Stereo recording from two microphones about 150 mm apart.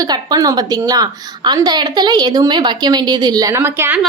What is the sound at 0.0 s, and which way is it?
A woman's voice, 25° right (ahead or behind).